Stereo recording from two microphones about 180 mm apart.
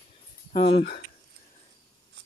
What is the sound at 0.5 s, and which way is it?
Speech, 35° left (ahead or behind).